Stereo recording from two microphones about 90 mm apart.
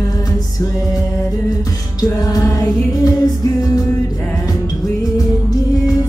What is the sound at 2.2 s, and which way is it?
Music, 40° left (ahead or behind).